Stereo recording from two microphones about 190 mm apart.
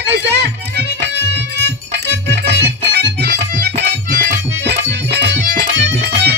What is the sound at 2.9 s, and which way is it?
Music, 60° right (ahead or behind).